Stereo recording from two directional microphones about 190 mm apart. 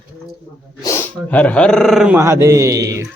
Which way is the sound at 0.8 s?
15° left (ahead or behind).